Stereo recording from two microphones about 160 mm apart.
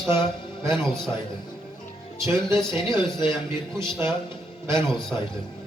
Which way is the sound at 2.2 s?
20° right (ahead or behind).